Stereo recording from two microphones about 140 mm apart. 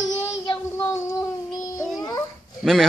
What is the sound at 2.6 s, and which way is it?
Speech, centre (ahead or behind).